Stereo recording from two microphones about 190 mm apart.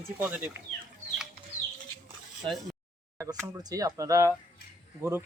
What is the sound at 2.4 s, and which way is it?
Speech, 25° right (ahead or behind).